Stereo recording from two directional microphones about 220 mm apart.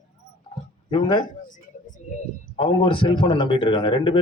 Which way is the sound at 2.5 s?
25° left (ahead or behind).